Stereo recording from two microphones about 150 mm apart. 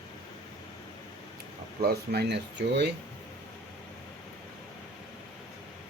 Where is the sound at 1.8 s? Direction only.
90° right.